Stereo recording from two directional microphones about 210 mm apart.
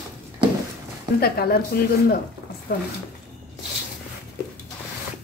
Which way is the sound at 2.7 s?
50° left (ahead or behind).